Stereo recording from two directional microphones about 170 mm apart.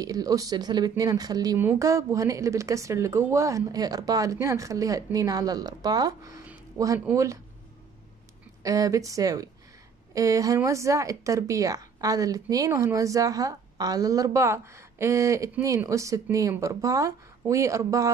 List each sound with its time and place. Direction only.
0.0 s speech: 20° right (ahead or behind)
8.6 s speech: 20° right (ahead or behind)